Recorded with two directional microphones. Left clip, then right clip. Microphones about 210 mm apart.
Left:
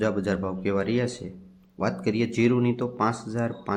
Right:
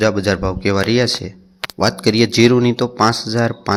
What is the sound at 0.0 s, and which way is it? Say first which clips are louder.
Speech: right 10 dB; 25° right (ahead or behind).